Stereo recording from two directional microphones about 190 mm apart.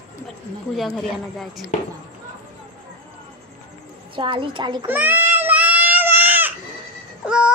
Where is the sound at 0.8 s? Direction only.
Centre (ahead or behind).